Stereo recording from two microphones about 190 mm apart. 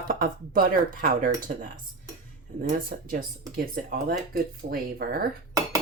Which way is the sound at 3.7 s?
55° right (ahead or behind).